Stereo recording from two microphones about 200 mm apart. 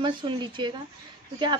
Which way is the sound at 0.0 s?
25° right (ahead or behind).